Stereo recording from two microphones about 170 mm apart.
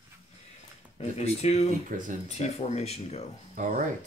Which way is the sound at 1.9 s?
50° right (ahead or behind).